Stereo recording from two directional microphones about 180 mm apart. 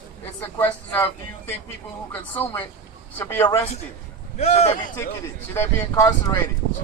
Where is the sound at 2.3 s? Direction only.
10° left (ahead or behind).